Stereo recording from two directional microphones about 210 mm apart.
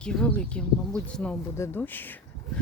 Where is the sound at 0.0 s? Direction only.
5° left (ahead or behind).